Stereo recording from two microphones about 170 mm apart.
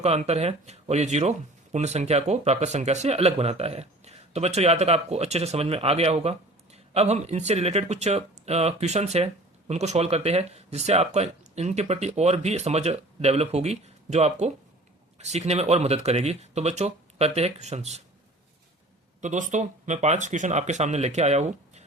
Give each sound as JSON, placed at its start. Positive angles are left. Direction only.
{"t": 0.0, "sound": "speech", "side_deg": -40}
{"t": 19.2, "sound": "speech", "side_deg": -45}